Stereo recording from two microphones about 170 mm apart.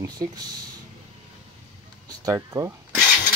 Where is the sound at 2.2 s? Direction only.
20° right (ahead or behind).